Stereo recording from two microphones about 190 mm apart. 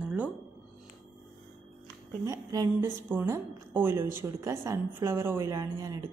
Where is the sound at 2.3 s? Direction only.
20° right (ahead or behind).